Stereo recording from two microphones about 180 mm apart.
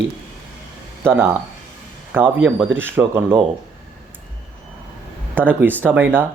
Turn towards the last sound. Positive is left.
turn(degrees=-10)  # may be behind; listen again after turning